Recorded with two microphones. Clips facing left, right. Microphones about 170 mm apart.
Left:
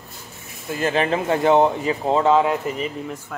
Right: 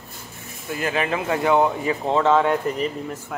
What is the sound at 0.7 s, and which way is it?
Speech, 30° left (ahead or behind).